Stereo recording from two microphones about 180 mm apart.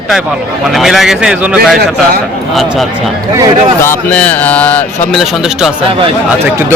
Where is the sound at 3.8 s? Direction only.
10° left (ahead or behind).